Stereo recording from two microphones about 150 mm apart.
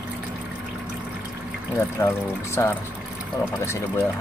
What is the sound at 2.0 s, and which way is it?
Speech, 15° left (ahead or behind).